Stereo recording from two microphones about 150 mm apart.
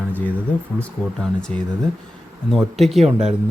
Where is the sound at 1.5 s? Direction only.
40° right (ahead or behind).